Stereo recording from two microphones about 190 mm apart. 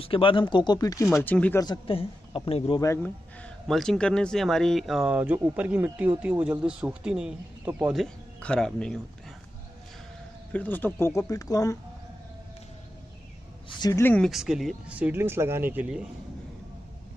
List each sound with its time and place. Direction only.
0.0 s a man's voice: 30° left (ahead or behind); by 1.6 s 10° left (ahead or behind)
1.6 s a man's voice: 25° left (ahead or behind)
2.8 s a man's voice: 10° left (ahead or behind)
10.5 s speech: 10° left (ahead or behind)
13.7 s a man's voice: 20° left (ahead or behind); by 16.1 s 5° right (ahead or behind)